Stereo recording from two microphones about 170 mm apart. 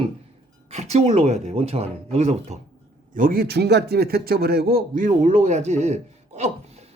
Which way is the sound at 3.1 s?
60° right (ahead or behind).